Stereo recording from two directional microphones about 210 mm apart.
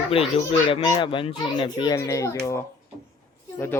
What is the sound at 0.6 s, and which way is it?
A child's voice, 20° left (ahead or behind).